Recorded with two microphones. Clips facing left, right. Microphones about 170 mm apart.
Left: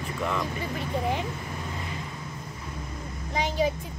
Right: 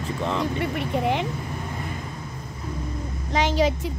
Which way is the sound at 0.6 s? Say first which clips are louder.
Right 5 dB; 70° right (ahead or behind).